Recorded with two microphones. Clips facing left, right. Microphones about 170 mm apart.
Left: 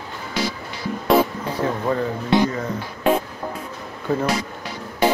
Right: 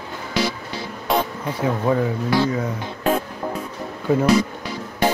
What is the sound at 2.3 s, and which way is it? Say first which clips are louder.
Speech: left 3 dB; 25° left (ahead or behind).